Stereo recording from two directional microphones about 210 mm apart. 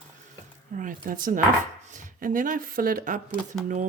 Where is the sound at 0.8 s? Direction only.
40° right (ahead or behind).